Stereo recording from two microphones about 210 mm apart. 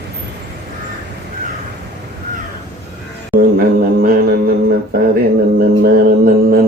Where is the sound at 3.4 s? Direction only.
45° right (ahead or behind).